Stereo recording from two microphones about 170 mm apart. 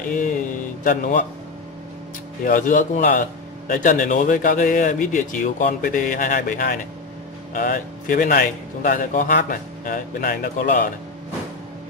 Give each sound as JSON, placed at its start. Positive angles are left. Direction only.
{"t": 0.8, "sound": "speech", "side_deg": 50}
{"t": 2.4, "sound": "speech", "side_deg": 50}